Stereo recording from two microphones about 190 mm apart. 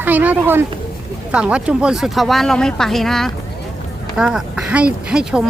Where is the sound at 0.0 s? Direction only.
10° right (ahead or behind).